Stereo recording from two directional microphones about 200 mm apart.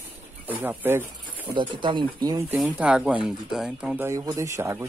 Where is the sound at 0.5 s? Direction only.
10° right (ahead or behind).